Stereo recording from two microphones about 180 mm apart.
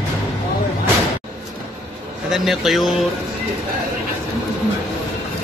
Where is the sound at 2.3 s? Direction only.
Centre (ahead or behind).